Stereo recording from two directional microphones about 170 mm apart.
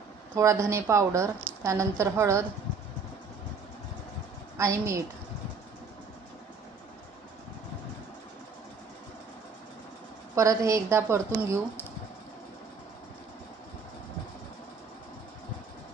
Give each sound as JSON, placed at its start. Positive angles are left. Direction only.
{"t": 0.3, "sound": "a woman's voice", "side_deg": -15}
{"t": 4.5, "sound": "a woman's voice", "side_deg": -15}
{"t": 10.3, "sound": "a woman's voice", "side_deg": -20}